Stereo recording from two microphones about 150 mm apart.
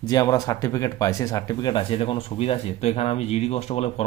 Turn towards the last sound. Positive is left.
turn(degrees=45)  # may be behind; listen again after turning